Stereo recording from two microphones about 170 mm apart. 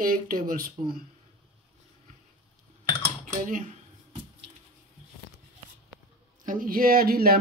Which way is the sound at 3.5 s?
50° right (ahead or behind).